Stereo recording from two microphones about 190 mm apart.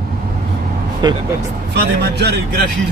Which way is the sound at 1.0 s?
20° right (ahead or behind).